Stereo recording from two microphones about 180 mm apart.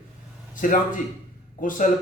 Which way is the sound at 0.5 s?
45° left (ahead or behind).